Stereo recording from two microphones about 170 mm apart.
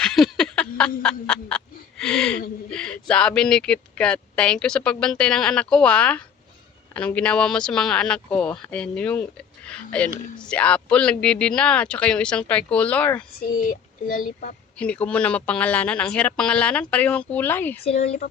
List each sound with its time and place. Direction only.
0.0 s a sound: centre (ahead or behind)
1.0 s speech: 5° left (ahead or behind)
13.4 s speech: 55° left (ahead or behind)
14.8 s speech: 5° left (ahead or behind)
17.9 s speech: 65° left (ahead or behind)